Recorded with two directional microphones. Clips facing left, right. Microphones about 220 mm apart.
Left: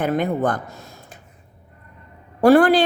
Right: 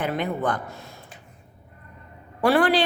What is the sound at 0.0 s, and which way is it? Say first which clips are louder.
Speech: left 5 dB; 45° left (ahead or behind).